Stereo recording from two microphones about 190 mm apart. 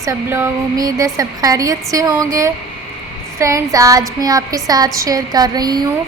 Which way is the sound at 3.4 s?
15° right (ahead or behind).